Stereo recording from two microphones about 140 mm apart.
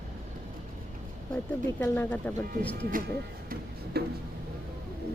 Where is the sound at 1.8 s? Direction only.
15° left (ahead or behind).